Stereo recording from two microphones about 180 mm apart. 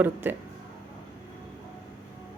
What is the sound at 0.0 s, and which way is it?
Speech, 10° right (ahead or behind).